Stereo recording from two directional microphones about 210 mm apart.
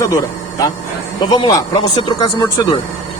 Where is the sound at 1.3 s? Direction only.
20° left (ahead or behind).